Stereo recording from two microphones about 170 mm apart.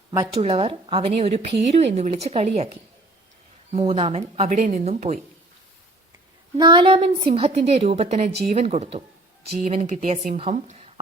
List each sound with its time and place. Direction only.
0.3 s a woman's voice: 35° right (ahead or behind)
3.7 s a woman's voice: 35° right (ahead or behind)
6.6 s a woman's voice: 25° right (ahead or behind); by 10.3 s 50° right (ahead or behind)
10.3 s speech: 40° right (ahead or behind)